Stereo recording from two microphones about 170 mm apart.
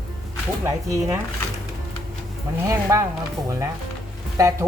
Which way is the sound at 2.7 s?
20° right (ahead or behind).